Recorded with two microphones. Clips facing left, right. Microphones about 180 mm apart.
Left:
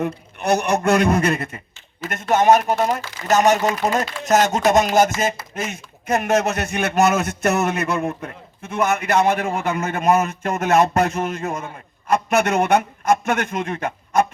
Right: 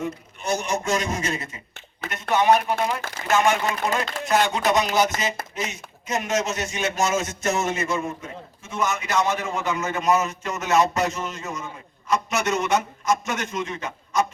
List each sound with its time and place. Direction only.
0.0 s a man's voice: 65° left (ahead or behind)
2.3 s a man's voice: 45° left (ahead or behind)